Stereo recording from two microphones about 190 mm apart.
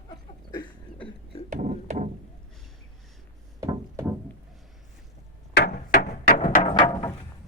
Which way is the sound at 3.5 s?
20° right (ahead or behind).